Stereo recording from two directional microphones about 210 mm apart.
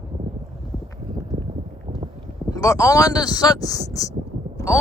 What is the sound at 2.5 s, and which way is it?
Speech, 15° left (ahead or behind).